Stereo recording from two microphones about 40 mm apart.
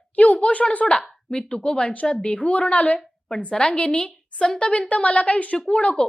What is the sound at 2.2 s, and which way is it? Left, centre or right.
A woman's voice, left.